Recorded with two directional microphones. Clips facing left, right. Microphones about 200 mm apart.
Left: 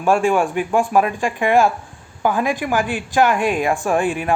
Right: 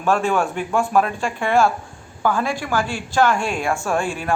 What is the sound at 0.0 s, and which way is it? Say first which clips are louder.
A man's voice: left 3 dB; 15° left (ahead or behind).